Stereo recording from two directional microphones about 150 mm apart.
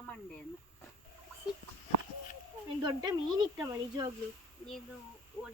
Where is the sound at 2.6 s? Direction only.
30° right (ahead or behind).